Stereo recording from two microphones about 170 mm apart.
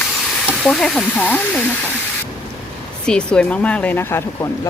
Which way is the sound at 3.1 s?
5° left (ahead or behind).